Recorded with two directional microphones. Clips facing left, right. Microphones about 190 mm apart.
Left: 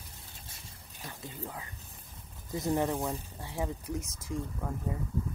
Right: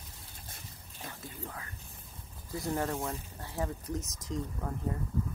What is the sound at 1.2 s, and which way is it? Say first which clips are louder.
Speech: left 4 dB; 20° left (ahead or behind).